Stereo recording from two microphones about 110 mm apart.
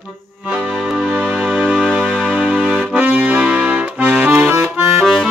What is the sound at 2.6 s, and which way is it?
Accordion, 5° right (ahead or behind).